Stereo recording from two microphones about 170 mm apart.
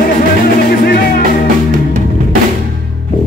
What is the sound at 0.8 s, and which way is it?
Music, 65° left (ahead or behind).